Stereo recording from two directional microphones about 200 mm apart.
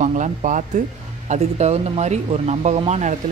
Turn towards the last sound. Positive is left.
turn(degrees=-35)  # may be behind; listen again after turning